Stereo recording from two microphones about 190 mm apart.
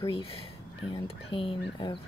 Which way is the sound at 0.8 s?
25° left (ahead or behind).